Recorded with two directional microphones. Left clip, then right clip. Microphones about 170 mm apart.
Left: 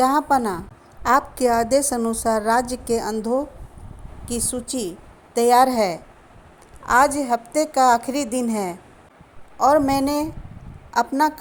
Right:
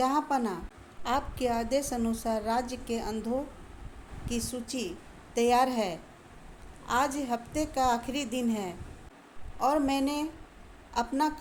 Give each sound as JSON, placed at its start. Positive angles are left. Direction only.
{"t": 0.0, "sound": "a woman's voice", "side_deg": 45}